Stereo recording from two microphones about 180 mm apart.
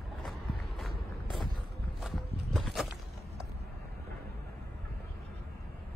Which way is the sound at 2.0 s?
Centre (ahead or behind).